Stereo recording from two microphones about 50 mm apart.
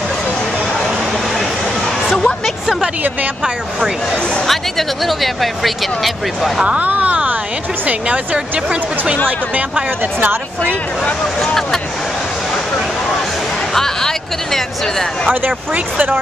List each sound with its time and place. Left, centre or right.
2.1 s music: centre
4.5 s speech: centre
6.6 s speech: right
8.6 s speech: centre
11.4 s speech: centre
13.7 s speech: centre